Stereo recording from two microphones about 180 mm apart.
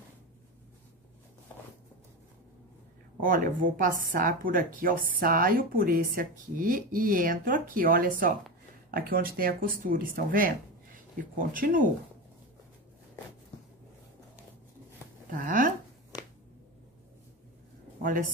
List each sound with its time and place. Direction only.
3.2 s speech: 50° right (ahead or behind)
15.2 s speech: 50° right (ahead or behind)
18.0 s speech: 50° right (ahead or behind)